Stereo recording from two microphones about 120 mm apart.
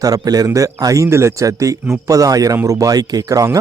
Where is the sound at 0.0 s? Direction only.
30° right (ahead or behind).